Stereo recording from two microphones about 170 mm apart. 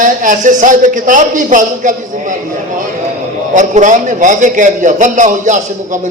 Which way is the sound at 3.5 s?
45° right (ahead or behind).